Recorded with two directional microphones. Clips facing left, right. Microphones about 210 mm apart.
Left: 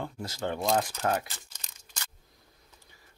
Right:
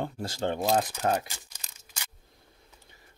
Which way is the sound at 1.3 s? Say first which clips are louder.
Right 1 dB; 10° right (ahead or behind).